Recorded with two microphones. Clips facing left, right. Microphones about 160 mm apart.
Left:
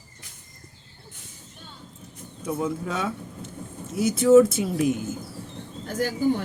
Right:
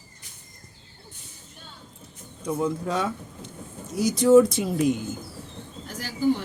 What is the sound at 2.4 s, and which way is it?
Speech, 5° left (ahead or behind).